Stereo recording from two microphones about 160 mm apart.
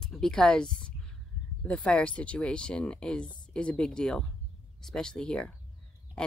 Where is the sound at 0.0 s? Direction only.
5° left (ahead or behind).